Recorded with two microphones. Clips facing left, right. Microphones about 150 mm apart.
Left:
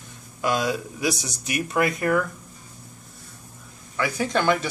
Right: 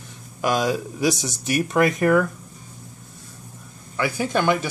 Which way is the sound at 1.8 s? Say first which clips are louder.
Right 5 dB; 20° right (ahead or behind).